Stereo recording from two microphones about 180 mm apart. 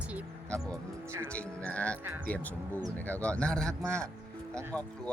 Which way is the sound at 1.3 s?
5° left (ahead or behind).